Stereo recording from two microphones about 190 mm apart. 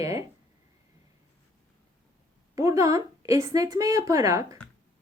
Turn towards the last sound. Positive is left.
turn(degrees=-15)  # may be behind; listen again after turning